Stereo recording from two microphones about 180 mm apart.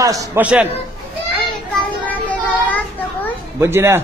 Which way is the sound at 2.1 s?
10° left (ahead or behind).